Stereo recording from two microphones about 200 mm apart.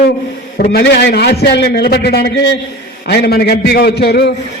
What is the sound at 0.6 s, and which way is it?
A man's voice, 55° left (ahead or behind).